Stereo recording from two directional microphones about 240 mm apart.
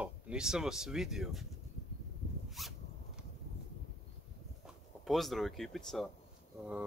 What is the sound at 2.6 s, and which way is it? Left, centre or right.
Speech, centre.